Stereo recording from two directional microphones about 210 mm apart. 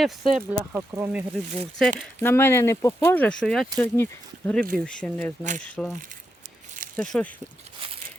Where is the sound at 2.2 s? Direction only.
10° left (ahead or behind).